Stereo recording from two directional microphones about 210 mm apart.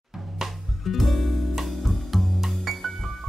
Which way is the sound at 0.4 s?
Centre (ahead or behind).